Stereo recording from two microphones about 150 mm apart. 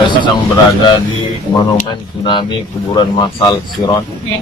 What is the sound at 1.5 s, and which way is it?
Speech, 25° left (ahead or behind).